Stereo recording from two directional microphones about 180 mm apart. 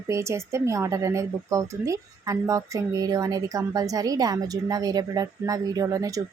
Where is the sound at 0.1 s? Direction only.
15° right (ahead or behind).